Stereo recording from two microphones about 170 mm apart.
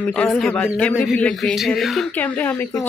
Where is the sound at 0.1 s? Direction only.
5° left (ahead or behind).